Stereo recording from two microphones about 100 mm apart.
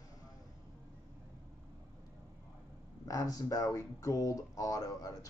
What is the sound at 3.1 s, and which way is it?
A man's voice, 40° left (ahead or behind).